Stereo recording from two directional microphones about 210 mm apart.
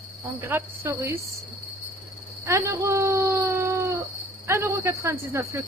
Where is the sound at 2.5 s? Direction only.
15° right (ahead or behind).